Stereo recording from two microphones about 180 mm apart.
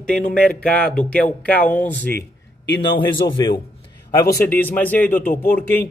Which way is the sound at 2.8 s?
25° left (ahead or behind).